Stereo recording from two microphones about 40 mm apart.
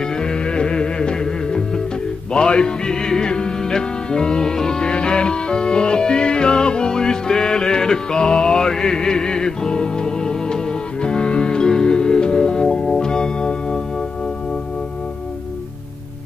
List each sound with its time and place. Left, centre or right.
0.2 s music: left